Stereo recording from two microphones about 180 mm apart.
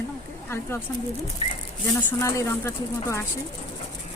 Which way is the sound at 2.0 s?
15° left (ahead or behind).